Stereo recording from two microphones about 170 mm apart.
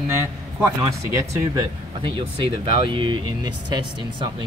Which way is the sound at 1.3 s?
20° right (ahead or behind).